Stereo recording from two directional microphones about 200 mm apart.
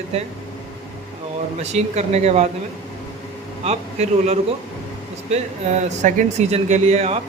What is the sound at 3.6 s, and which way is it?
Speech, 35° right (ahead or behind).